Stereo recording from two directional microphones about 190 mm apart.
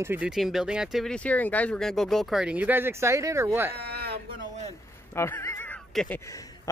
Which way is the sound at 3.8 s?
55° right (ahead or behind).